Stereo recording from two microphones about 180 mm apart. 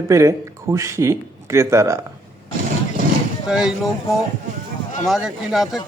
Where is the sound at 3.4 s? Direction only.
5° right (ahead or behind).